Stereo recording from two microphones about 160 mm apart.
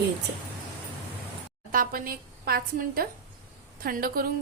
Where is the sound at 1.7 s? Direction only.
60° right (ahead or behind).